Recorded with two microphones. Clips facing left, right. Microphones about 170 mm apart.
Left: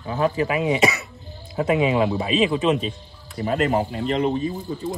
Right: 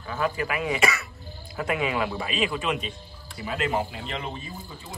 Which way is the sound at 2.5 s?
35° left (ahead or behind).